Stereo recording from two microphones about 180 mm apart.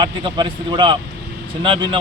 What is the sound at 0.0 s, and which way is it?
Speech, 25° right (ahead or behind).